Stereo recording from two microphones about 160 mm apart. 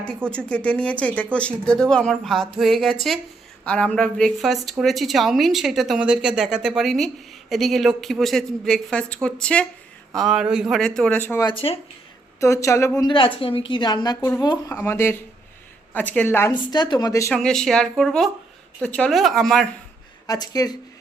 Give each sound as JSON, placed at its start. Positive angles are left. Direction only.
{"t": 0.3, "sound": "a woman's voice", "side_deg": 5}
{"t": 11.4, "sound": "speech", "side_deg": 35}
{"t": 12.4, "sound": "a woman's voice", "side_deg": 20}
{"t": 13.0, "sound": "a woman's voice", "side_deg": 30}
{"t": 16.7, "sound": "a woman's voice", "side_deg": 30}
{"t": 17.3, "sound": "a woman's voice", "side_deg": 5}
{"t": 20.2, "sound": "a woman's voice", "side_deg": 20}